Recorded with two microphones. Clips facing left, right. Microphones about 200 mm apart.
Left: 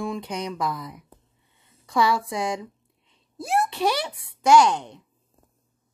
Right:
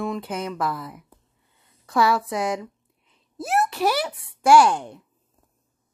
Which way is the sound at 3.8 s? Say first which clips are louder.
Right 1 dB; 5° right (ahead or behind).